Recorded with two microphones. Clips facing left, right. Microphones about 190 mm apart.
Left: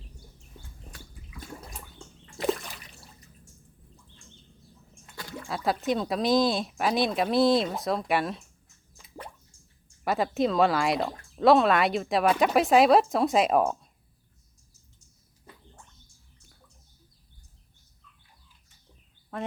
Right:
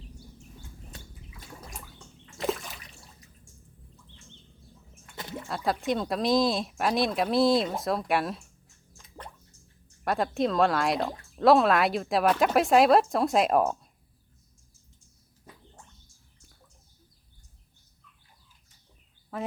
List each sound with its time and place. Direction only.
0.9 s bathtub: 25° right (ahead or behind)
2.4 s splash: centre (ahead or behind)
5.1 s a sound: 20° right (ahead or behind)
5.5 s speech: centre (ahead or behind)
9.0 s drip: 5° left (ahead or behind)
10.0 s speech: centre (ahead or behind)
19.3 s a sound: centre (ahead or behind)